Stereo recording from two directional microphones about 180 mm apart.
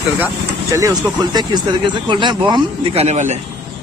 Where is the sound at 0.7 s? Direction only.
20° right (ahead or behind); by 3.3 s 40° right (ahead or behind).